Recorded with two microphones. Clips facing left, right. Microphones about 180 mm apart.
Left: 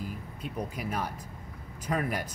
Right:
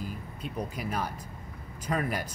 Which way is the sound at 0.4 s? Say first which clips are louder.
Even; 5° left (ahead or behind).